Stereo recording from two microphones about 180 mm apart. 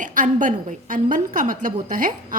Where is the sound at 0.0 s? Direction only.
45° right (ahead or behind).